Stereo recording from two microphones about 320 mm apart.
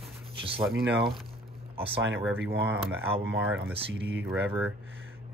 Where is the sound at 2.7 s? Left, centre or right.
Centre.